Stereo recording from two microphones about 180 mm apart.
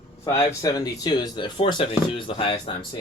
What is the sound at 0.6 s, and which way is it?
Speech, 20° left (ahead or behind).